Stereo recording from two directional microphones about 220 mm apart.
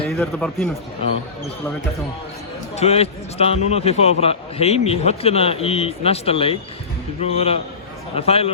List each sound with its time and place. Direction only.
0.1 s a man's voice: 5° left (ahead or behind)
2.7 s a man's voice: 30° left (ahead or behind)